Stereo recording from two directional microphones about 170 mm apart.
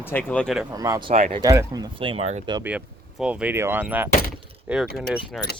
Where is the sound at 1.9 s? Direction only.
30° right (ahead or behind).